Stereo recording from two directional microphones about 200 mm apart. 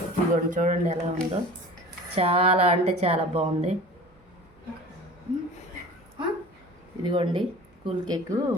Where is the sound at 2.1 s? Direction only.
30° right (ahead or behind).